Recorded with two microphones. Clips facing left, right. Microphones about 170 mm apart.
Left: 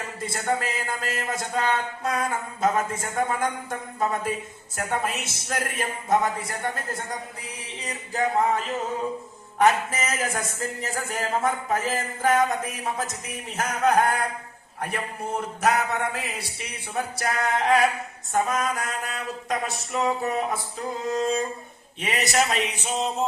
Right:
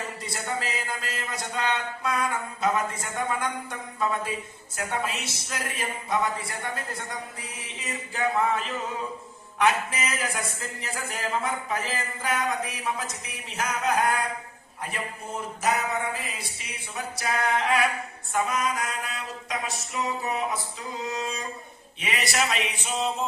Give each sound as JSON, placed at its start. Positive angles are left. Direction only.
{"t": 0.2, "sound": "speech", "side_deg": 50}
{"t": 7.8, "sound": "music", "side_deg": 40}
{"t": 9.6, "sound": "speech", "side_deg": 45}
{"t": 13.6, "sound": "a sound", "side_deg": 55}
{"t": 15.6, "sound": "a sound", "side_deg": 70}
{"t": 16.9, "sound": "speech", "side_deg": 55}